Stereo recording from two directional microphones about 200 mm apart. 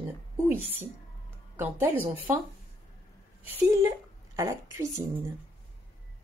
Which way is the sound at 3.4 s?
15° right (ahead or behind).